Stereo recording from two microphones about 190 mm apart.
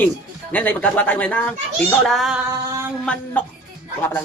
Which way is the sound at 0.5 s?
5° left (ahead or behind).